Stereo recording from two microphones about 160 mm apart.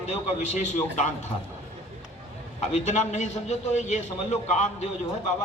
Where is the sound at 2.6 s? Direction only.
45° left (ahead or behind).